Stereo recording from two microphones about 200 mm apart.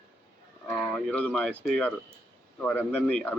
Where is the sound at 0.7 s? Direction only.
5° left (ahead or behind).